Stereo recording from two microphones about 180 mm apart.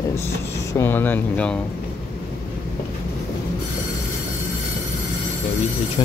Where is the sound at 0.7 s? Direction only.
10° left (ahead or behind).